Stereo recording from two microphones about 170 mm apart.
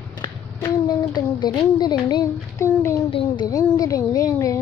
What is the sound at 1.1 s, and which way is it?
Child singing, 25° left (ahead or behind).